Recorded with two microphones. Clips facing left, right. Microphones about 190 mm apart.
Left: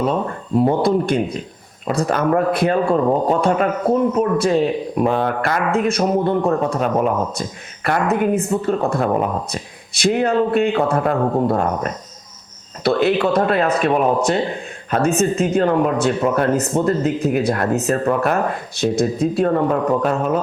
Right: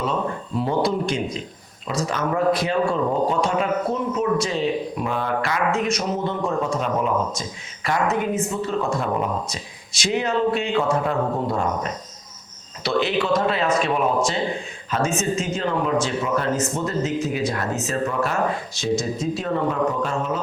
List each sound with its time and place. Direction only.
0.5 s a woman's voice: 50° left (ahead or behind)